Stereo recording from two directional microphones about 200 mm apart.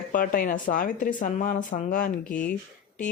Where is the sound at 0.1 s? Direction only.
45° left (ahead or behind).